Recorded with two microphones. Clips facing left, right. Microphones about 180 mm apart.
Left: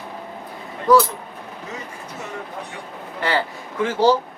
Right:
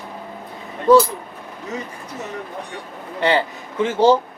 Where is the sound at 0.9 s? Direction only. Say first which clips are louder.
Right 3 dB; 25° right (ahead or behind).